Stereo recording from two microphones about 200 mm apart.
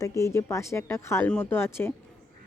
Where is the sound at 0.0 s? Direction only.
15° left (ahead or behind).